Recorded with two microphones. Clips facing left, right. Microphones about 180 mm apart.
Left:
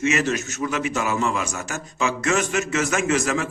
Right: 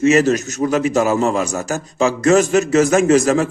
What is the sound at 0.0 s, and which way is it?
A man's voice, 40° right (ahead or behind).